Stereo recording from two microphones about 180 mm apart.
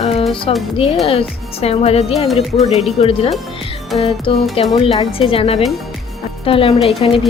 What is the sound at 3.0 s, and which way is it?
Speech, 35° left (ahead or behind).